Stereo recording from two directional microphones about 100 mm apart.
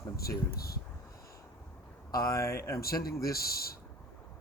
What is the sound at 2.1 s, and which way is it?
Speech, 35° left (ahead or behind).